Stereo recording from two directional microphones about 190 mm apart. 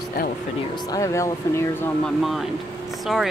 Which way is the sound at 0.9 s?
15° left (ahead or behind).